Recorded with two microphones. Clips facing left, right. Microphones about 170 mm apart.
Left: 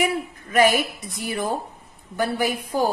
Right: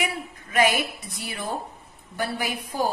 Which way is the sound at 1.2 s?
40° left (ahead or behind).